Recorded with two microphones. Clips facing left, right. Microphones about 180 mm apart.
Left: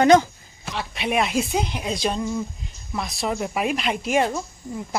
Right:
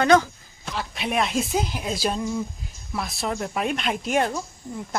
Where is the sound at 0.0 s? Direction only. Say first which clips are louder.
Left 3 dB; 15° left (ahead or behind).